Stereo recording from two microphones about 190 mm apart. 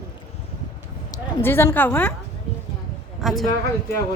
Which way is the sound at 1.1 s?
10° left (ahead or behind).